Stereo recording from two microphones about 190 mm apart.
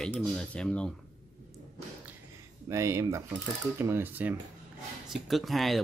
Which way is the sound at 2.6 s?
15° right (ahead or behind).